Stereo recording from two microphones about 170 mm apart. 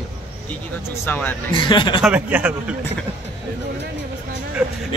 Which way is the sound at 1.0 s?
10° left (ahead or behind).